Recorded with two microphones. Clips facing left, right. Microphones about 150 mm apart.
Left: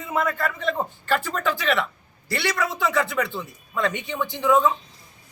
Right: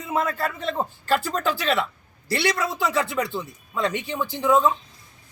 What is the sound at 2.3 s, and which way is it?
Speech, 30° right (ahead or behind).